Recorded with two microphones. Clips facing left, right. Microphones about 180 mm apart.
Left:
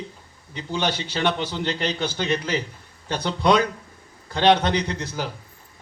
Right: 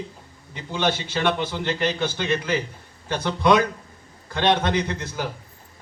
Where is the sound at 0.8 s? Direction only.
50° right (ahead or behind).